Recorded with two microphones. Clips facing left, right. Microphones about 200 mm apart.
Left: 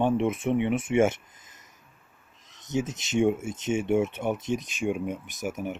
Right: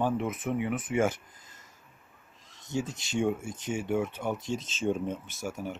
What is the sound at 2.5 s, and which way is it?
Speech, 20° left (ahead or behind).